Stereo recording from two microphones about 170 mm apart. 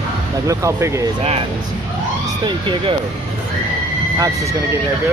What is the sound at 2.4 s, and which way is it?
Speech, 30° right (ahead or behind).